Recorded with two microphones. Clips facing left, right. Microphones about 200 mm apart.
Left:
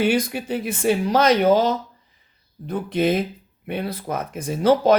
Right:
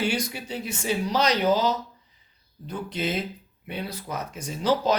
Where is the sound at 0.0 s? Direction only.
55° left (ahead or behind).